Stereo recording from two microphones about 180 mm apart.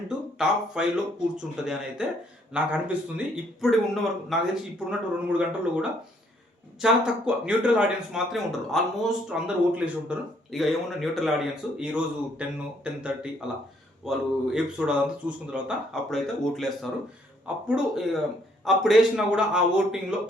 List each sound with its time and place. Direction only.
0.3 s speech: 5° right (ahead or behind)